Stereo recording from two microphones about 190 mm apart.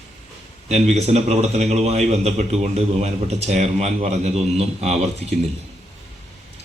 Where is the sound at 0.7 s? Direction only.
35° right (ahead or behind).